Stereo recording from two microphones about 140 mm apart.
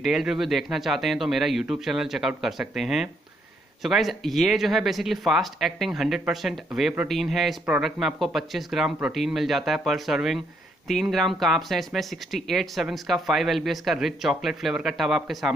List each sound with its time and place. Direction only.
0.0 s speech: 5° right (ahead or behind)